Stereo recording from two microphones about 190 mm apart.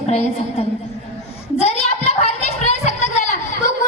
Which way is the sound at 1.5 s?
35° left (ahead or behind).